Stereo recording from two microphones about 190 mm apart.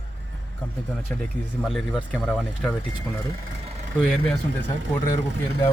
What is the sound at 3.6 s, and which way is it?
Vehicle, 35° right (ahead or behind).